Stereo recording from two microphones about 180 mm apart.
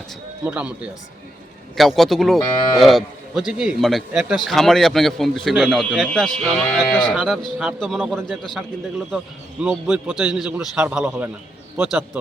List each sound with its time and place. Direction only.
0.4 s speech: 5° right (ahead or behind)
1.7 s moo: centre (ahead or behind)
9.6 s moo: 5° right (ahead or behind)
10.8 s speech: 10° right (ahead or behind)